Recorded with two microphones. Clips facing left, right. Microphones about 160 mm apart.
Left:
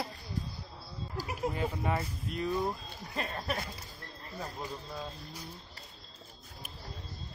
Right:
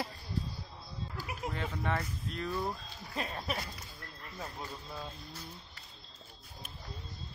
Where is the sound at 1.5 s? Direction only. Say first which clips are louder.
Even; 10° left (ahead or behind).